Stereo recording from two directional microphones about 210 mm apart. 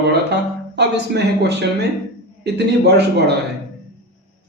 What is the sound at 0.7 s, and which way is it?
Speech, 50° right (ahead or behind).